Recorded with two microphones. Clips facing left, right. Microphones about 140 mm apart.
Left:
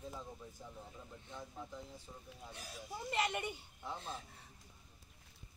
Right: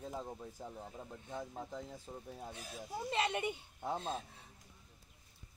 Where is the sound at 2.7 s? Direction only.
25° right (ahead or behind).